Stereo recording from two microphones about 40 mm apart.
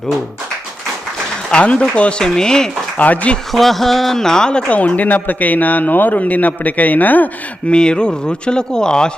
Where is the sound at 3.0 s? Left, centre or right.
Left.